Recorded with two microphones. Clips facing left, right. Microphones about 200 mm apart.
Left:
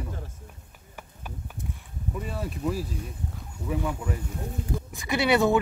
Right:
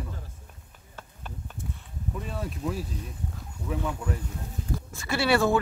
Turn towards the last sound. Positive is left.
turn(degrees=20)  # may be behind; listen again after turning